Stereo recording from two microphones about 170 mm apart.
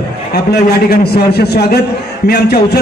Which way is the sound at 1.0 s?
70° left (ahead or behind).